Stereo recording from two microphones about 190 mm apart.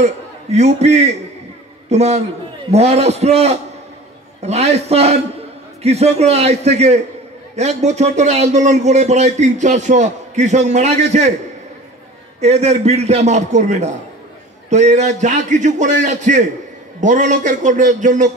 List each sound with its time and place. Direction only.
0.0 s a man's voice: 35° right (ahead or behind)
12.4 s speech: 35° right (ahead or behind)